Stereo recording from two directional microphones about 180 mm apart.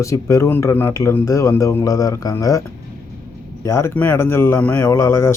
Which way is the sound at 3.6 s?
15° left (ahead or behind).